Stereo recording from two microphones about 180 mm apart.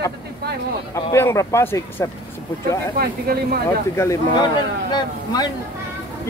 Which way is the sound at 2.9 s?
60° right (ahead or behind).